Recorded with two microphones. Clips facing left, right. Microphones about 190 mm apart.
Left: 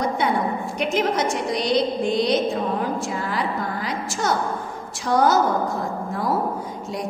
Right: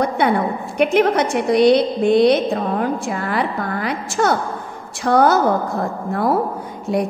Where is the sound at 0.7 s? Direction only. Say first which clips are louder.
Right 8 dB; 60° right (ahead or behind).